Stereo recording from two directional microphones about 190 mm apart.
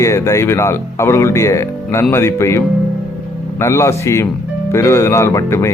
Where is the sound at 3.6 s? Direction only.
15° left (ahead or behind).